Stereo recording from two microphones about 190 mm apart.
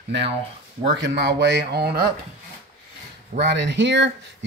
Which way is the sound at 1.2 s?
60° right (ahead or behind).